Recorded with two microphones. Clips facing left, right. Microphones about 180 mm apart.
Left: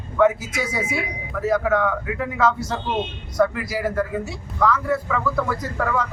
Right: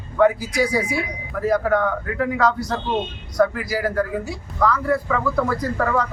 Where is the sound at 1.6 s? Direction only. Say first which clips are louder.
Right 1 dB; centre (ahead or behind).